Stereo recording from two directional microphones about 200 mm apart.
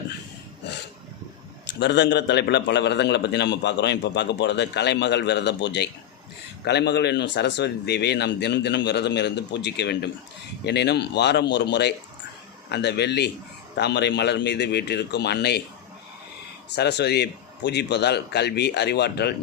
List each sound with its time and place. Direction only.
1.8 s a man's voice: 60° left (ahead or behind)
16.7 s a man's voice: 55° left (ahead or behind)